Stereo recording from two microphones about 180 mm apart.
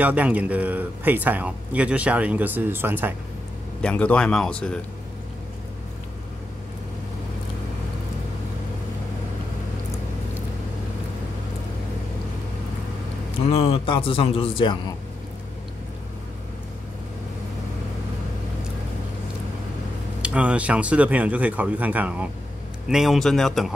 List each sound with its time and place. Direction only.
0.0 s a man's voice: 10° right (ahead or behind)
3.8 s speech: 5° left (ahead or behind)
13.5 s a man's voice: 30° left (ahead or behind)
20.2 s a man's voice: 5° right (ahead or behind)